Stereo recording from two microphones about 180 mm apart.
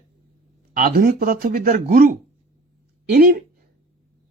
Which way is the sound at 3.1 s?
55° right (ahead or behind).